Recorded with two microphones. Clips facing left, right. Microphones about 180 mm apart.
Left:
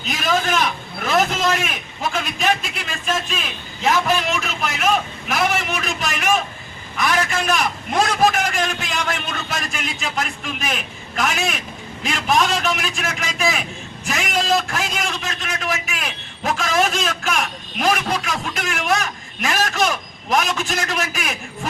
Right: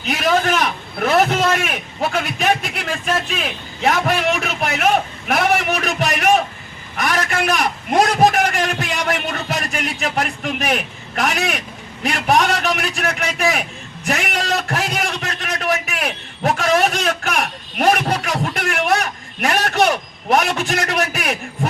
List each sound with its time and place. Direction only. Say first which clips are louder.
0.0 s a man's voice: right 4 dB; 60° right (ahead or behind)
3.8 s a man's voice: right 2 dB; 60° right (ahead or behind)
7.9 s a man's voice: right 4 dB; 35° right (ahead or behind)
8.4 s a man's voice: right 4 dB; 65° right (ahead or behind)